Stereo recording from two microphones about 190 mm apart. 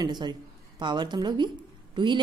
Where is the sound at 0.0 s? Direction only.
20° right (ahead or behind).